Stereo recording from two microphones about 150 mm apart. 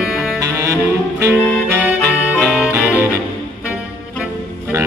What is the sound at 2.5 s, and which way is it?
Music, 5° right (ahead or behind).